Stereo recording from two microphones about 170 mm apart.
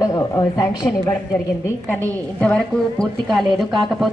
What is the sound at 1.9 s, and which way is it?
A woman's voice, 5° left (ahead or behind).